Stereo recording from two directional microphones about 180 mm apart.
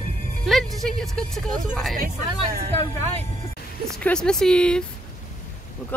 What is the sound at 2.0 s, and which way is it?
Speech, 55° right (ahead or behind).